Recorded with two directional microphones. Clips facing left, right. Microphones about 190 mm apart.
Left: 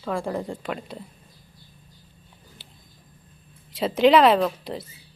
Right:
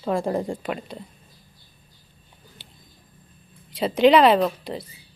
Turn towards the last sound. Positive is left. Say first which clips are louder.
# right 1 dB
turn(degrees=0)  # may be behind; listen again after turning